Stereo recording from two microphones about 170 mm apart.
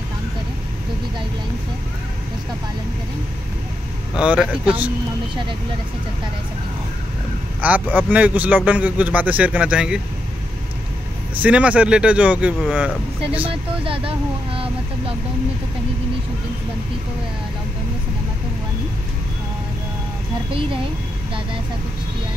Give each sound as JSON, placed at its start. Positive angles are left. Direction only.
{"t": 4.2, "sound": "a man's voice", "side_deg": -5}
{"t": 7.6, "sound": "a man's voice", "side_deg": -10}
{"t": 11.4, "sound": "a man's voice", "side_deg": -10}
{"t": 13.5, "sound": "speech", "side_deg": -30}